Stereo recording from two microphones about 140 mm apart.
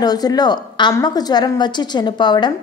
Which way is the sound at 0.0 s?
30° left (ahead or behind).